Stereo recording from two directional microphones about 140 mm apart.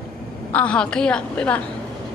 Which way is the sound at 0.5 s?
10° left (ahead or behind).